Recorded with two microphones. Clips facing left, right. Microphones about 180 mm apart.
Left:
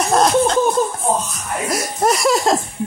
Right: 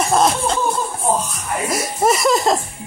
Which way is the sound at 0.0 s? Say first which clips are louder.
Left 2 dB; centre (ahead or behind).